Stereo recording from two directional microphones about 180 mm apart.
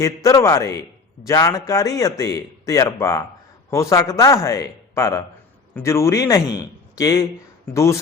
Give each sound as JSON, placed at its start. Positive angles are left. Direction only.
{"t": 0.0, "sound": "a man's voice", "side_deg": 20}